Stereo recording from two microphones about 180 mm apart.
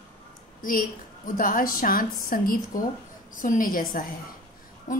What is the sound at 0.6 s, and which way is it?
A woman's voice, 50° left (ahead or behind).